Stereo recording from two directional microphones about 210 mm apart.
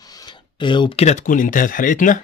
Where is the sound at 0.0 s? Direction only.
20° left (ahead or behind).